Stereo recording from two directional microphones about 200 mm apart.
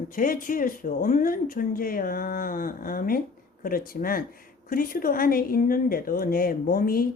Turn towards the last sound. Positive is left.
turn(degrees=45)  # may be behind; listen again after turning